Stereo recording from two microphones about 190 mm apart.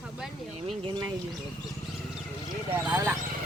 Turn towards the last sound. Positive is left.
turn(degrees=-10)  # may be behind; listen again after turning